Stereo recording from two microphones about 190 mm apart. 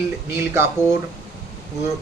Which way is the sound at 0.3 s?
15° right (ahead or behind).